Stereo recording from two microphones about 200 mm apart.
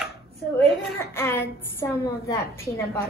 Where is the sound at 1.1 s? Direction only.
10° left (ahead or behind).